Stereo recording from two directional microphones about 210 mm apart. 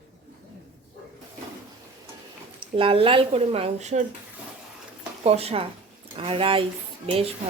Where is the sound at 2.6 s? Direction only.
25° right (ahead or behind).